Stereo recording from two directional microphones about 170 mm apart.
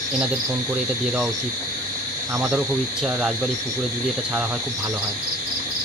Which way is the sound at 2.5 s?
5° right (ahead or behind).